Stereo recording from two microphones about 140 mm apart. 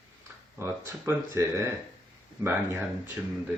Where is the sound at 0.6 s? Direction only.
15° right (ahead or behind).